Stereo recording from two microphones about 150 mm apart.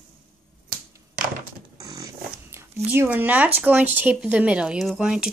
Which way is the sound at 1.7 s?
25° right (ahead or behind).